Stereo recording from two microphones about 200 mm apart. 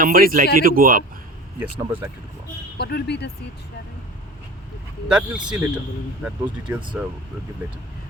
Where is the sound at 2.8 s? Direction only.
50° left (ahead or behind).